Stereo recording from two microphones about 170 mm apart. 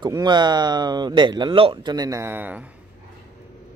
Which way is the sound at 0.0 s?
25° right (ahead or behind).